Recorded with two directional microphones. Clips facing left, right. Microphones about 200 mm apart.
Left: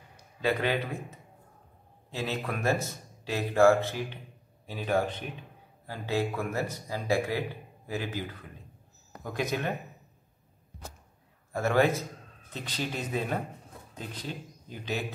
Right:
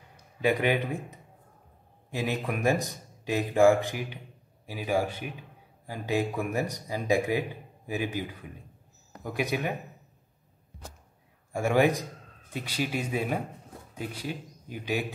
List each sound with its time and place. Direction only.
0.4 s speech: 15° right (ahead or behind)
11.5 s a man's voice: 15° right (ahead or behind)